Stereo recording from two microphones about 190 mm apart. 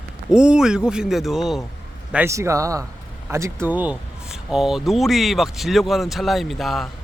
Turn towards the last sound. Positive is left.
turn(degrees=0)  # may be behind; listen again after turning